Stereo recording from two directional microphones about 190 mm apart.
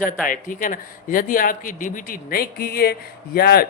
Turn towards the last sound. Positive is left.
turn(degrees=55)  # may be behind; listen again after turning